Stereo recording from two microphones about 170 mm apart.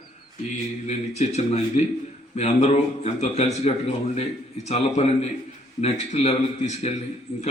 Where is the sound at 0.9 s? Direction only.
40° left (ahead or behind).